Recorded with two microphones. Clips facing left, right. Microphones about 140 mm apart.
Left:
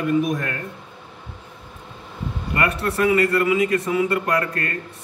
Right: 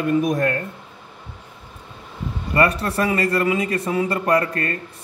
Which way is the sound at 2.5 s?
35° right (ahead or behind).